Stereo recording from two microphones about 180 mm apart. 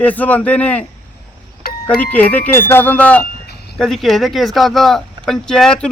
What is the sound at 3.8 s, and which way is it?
A man's voice, centre (ahead or behind).